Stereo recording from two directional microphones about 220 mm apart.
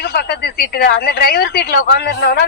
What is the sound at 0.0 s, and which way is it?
Speech, 45° left (ahead or behind).